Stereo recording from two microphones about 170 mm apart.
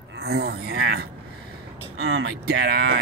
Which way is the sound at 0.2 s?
75° right (ahead or behind).